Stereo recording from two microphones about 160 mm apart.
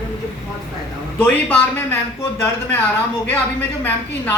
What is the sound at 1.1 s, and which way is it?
Speech, 10° left (ahead or behind).